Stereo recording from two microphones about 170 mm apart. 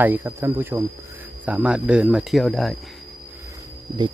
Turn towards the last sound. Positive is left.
turn(degrees=-20)  # may be behind; listen again after turning